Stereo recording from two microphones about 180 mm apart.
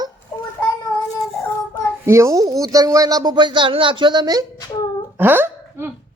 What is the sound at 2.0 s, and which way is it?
Speech, 15° right (ahead or behind).